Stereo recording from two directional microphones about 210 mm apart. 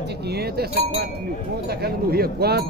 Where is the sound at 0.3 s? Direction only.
50° right (ahead or behind).